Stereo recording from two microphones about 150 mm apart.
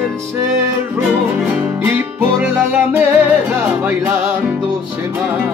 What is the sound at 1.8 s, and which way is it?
Music, 15° right (ahead or behind).